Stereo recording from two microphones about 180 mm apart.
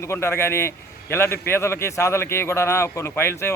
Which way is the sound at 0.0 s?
15° left (ahead or behind).